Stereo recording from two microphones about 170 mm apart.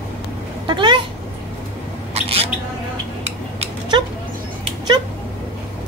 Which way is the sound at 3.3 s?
35° right (ahead or behind).